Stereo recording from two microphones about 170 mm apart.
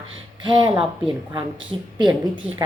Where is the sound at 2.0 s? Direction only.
25° right (ahead or behind).